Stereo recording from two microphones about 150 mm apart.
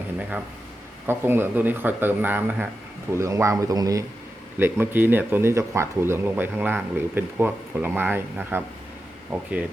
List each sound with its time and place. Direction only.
1.0 s a man's voice: 15° right (ahead or behind)